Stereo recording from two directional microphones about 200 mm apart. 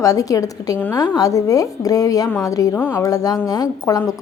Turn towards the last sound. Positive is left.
turn(degrees=20)  # may be behind; listen again after turning